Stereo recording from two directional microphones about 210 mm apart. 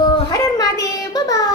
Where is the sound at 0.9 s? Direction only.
20° left (ahead or behind).